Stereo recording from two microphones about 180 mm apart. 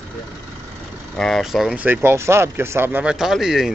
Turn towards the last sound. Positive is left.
turn(degrees=-5)  # may be behind; listen again after turning